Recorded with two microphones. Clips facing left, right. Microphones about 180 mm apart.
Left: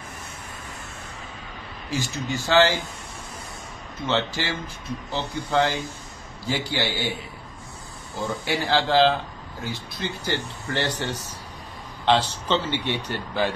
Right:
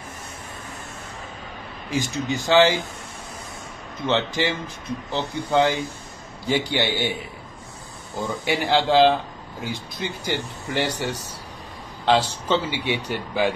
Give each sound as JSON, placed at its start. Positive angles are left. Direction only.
{"t": 1.9, "sound": "speech", "side_deg": -15}
{"t": 4.0, "sound": "a man's voice", "side_deg": -20}
{"t": 8.2, "sound": "speech", "side_deg": -15}